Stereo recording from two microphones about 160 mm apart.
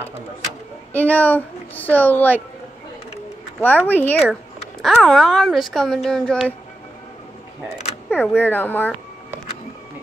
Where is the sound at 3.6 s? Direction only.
10° left (ahead or behind).